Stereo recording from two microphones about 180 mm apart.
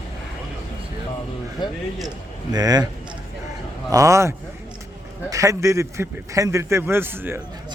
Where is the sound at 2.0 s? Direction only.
20° right (ahead or behind).